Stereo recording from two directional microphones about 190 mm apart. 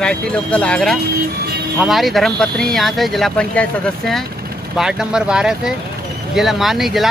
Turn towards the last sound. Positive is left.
turn(degrees=0)  # may be behind; listen again after turning